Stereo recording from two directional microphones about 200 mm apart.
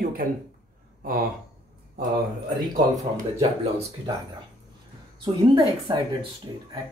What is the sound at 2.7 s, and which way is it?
Speech, 40° right (ahead or behind).